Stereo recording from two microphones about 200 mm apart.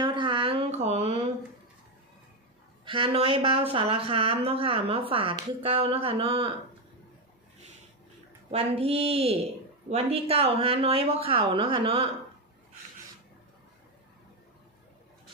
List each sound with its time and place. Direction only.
0.0 s a sound: 25° right (ahead or behind)
2.8 s a woman's voice: 25° right (ahead or behind)
8.4 s a woman's voice: 30° right (ahead or behind)